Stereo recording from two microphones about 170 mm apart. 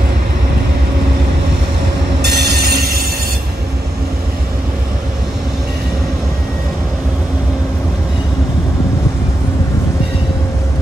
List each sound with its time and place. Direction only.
2.2 s train: 70° right (ahead or behind)